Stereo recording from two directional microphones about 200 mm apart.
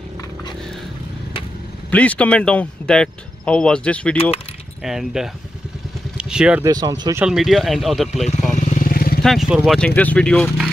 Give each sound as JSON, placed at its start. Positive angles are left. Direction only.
{"t": 1.9, "sound": "speech", "side_deg": 5}
{"t": 6.6, "sound": "speech", "side_deg": -20}
{"t": 7.2, "sound": "speech", "side_deg": 0}
{"t": 8.5, "sound": "vehicle", "side_deg": 40}
{"t": 9.2, "sound": "speech", "side_deg": 0}